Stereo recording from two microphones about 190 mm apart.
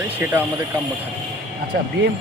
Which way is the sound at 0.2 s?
10° right (ahead or behind).